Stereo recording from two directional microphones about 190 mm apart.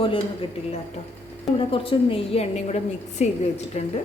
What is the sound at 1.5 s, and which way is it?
A woman's voice, 30° left (ahead or behind).